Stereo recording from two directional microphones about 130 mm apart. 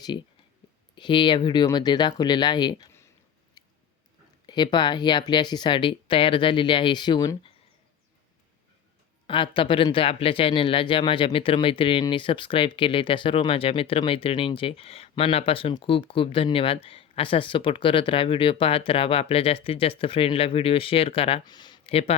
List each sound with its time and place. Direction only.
0.9 s speech: 40° left (ahead or behind)
3.6 s chewing: 30° left (ahead or behind)
4.4 s speech: 35° left (ahead or behind)
9.2 s speech: 40° left (ahead or behind)
21.4 s speech: 35° left (ahead or behind)
21.8 s speech: 50° left (ahead or behind)